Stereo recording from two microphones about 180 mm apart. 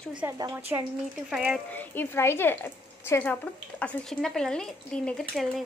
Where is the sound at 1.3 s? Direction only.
5° right (ahead or behind).